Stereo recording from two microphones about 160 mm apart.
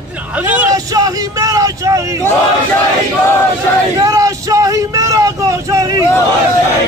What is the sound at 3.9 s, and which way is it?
Vehicle, 20° right (ahead or behind).